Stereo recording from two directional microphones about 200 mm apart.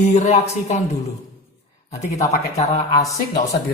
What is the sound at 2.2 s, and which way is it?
Speech, 35° left (ahead or behind).